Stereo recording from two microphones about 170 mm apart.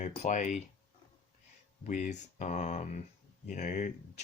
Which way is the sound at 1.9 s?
45° left (ahead or behind).